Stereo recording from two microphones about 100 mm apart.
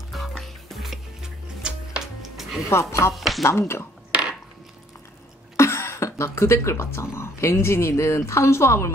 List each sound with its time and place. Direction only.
0.1 s music: centre (ahead or behind)
2.7 s speech: 30° left (ahead or behind)
3.2 s speech: centre (ahead or behind)
3.4 s speech: 25° left (ahead or behind)
4.1 s a sound: 10° right (ahead or behind)
5.6 s speech: 25° left (ahead or behind)